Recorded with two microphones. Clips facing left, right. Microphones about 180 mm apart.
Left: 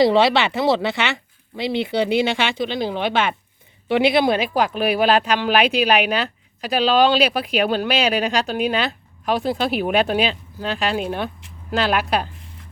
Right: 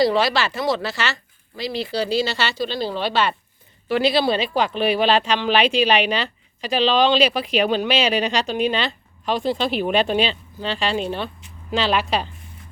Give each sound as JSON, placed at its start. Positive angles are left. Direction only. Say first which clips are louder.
{"t": 0.0, "sound": "speech", "louder": "left 3 dB", "side_deg": 25}